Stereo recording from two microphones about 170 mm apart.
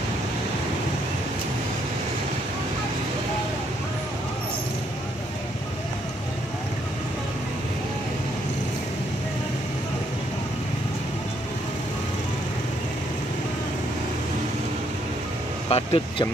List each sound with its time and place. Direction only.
15.7 s speech: 35° left (ahead or behind)